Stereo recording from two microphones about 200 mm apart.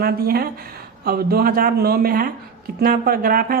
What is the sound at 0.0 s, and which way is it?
A woman's voice, 50° right (ahead or behind).